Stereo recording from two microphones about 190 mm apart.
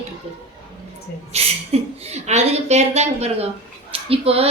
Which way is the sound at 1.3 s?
35° right (ahead or behind).